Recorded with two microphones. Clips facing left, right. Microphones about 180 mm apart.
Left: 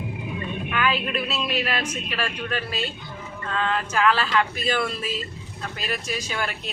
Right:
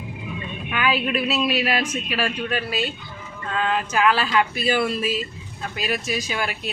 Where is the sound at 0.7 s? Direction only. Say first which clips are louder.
Right 3 dB; 5° right (ahead or behind).